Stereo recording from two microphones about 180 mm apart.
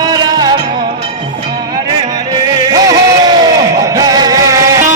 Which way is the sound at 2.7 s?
20° right (ahead or behind).